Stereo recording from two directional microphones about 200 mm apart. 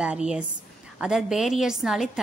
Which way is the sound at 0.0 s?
5° right (ahead or behind).